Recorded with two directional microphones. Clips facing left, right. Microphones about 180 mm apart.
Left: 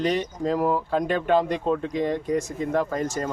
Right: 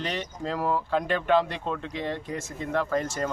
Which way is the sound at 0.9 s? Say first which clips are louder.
Left 1 dB; 40° left (ahead or behind).